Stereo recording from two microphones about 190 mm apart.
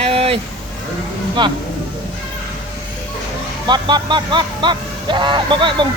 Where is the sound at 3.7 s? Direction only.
25° right (ahead or behind).